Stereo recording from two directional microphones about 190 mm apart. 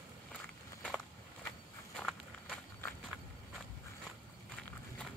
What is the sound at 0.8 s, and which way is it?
Walk, centre (ahead or behind).